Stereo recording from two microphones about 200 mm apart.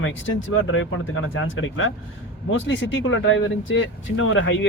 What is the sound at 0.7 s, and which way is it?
Speech, 90° left.